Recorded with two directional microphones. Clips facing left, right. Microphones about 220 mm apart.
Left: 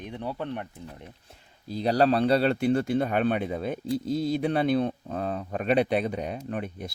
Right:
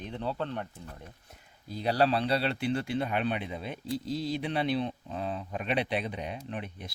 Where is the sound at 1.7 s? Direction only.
40° left (ahead or behind).